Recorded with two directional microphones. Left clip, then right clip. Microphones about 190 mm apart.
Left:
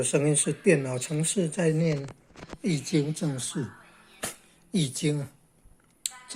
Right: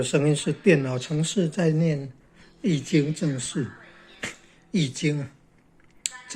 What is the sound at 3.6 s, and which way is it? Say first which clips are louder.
Speech: right 4 dB; 35° left (ahead or behind).